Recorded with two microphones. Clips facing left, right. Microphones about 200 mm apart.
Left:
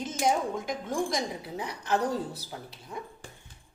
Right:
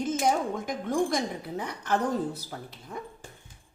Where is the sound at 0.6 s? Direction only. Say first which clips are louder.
Right 3 dB; 50° right (ahead or behind).